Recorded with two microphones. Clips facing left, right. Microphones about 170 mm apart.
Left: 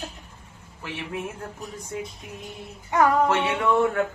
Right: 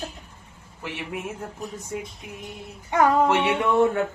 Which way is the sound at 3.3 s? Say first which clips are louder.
Right 1 dB; 20° right (ahead or behind).